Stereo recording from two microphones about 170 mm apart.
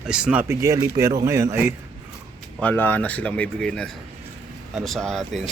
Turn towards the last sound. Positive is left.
turn(degrees=0)  # may be behind; listen again after turning